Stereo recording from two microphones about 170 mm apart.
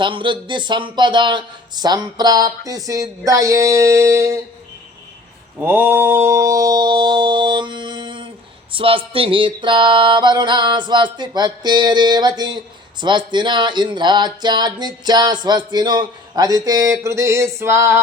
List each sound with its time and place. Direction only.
0.0 s music: 30° right (ahead or behind)
5.5 s mantra: 10° right (ahead or behind); by 8.3 s 30° right (ahead or behind)
8.7 s speech: 30° right (ahead or behind)
9.1 s music: 30° right (ahead or behind); by 18.0 s 15° right (ahead or behind)